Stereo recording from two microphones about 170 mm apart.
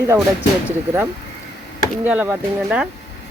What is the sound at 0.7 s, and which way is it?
Speech, 15° right (ahead or behind).